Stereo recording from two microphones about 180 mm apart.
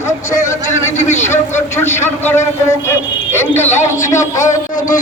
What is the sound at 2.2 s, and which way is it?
Speech, 10° left (ahead or behind).